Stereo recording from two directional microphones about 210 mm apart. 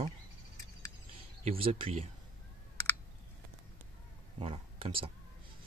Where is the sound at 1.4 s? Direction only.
25° right (ahead or behind).